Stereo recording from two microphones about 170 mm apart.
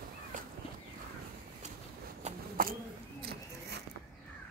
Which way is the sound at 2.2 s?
40° right (ahead or behind).